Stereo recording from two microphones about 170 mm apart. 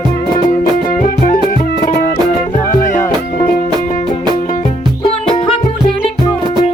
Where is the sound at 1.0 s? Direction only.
55° left (ahead or behind).